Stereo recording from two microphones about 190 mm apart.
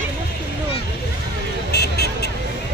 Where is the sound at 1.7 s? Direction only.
60° left (ahead or behind).